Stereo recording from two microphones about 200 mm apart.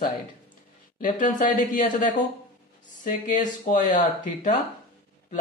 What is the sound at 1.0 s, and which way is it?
Speech, 40° left (ahead or behind).